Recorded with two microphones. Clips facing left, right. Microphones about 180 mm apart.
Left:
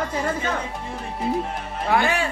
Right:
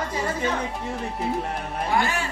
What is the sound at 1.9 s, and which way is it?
Speech, 65° left (ahead or behind).